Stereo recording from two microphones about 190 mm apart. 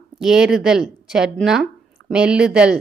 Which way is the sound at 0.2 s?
5° right (ahead or behind).